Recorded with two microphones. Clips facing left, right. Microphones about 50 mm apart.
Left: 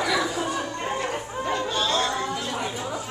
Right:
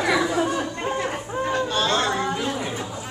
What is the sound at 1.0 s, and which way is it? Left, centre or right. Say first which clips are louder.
Chatter: right 2 dB; right.